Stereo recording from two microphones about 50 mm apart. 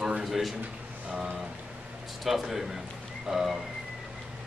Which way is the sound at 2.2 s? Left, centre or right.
Centre.